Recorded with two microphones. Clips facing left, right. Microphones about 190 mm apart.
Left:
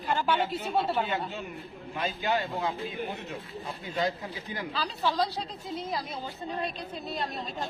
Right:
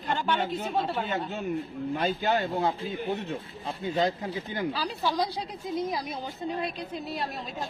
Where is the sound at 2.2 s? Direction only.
45° right (ahead or behind).